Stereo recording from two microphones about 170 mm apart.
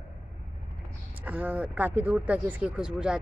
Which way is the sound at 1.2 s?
10° right (ahead or behind).